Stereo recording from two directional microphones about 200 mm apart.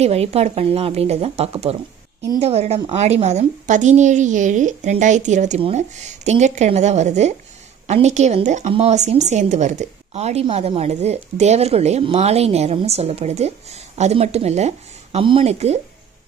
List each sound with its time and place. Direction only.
0.0 s speech: 30° right (ahead or behind)